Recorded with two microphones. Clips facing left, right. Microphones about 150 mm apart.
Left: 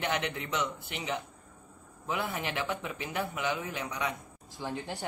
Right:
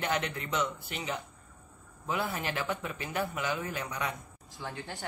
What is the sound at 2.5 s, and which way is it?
A man's voice, 15° left (ahead or behind).